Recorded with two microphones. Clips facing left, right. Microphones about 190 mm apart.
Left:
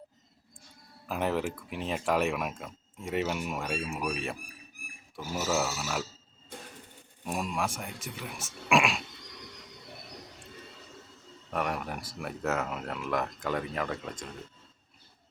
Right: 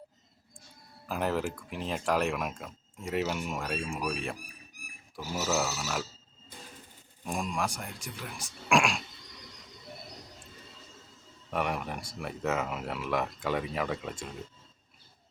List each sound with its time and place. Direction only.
1.0 s speech: centre (ahead or behind)
7.3 s speech: 5° left (ahead or behind)
11.5 s speech: centre (ahead or behind)